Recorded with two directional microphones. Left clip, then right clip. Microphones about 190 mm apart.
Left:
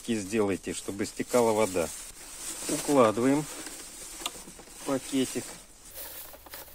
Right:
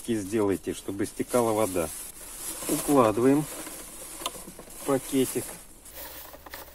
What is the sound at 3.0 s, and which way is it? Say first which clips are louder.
Speech: right 1 dB; 35° left (ahead or behind).